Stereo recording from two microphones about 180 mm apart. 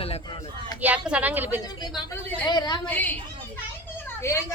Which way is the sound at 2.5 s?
25° left (ahead or behind).